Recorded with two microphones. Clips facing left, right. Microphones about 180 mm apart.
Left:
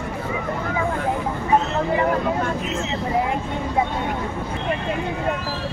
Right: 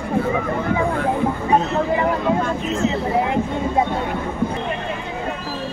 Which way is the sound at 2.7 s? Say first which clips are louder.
Right 5 dB; 20° left (ahead or behind).